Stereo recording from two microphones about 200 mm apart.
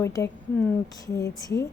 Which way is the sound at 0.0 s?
15° left (ahead or behind).